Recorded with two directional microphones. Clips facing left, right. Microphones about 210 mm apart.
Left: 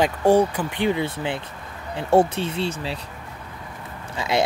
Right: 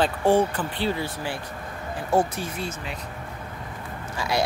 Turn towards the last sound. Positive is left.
turn(degrees=25)  # may be behind; listen again after turning